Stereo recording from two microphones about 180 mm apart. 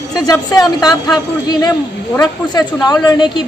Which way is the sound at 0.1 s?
20° left (ahead or behind).